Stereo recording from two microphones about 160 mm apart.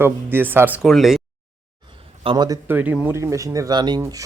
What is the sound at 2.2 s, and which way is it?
Speech, 25° right (ahead or behind).